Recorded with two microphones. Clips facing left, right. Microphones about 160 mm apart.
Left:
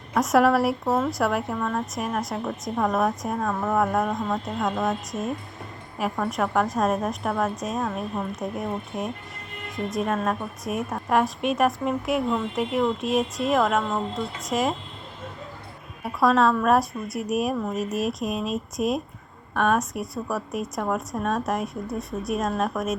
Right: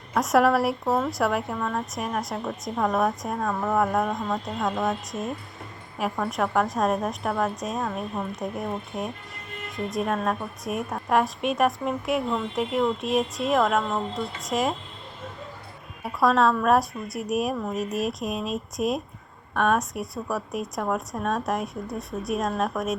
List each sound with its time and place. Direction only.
0.1 s speech: centre (ahead or behind)
16.0 s speech: centre (ahead or behind)